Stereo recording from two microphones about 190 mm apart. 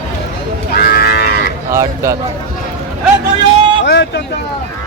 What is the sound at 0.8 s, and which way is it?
Livestock, 55° left (ahead or behind).